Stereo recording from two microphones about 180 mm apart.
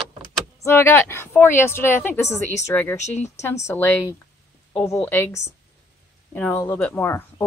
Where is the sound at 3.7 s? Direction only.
15° left (ahead or behind).